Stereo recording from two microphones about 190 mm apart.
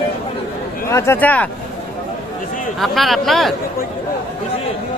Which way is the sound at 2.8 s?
Centre (ahead or behind).